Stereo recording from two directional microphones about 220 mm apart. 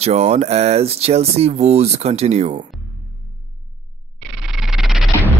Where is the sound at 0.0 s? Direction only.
30° right (ahead or behind).